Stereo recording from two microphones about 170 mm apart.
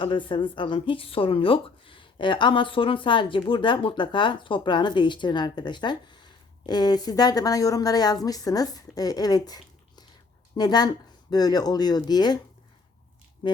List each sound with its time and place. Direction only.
0.0 s speech: 30° left (ahead or behind)
13.4 s music: 30° left (ahead or behind)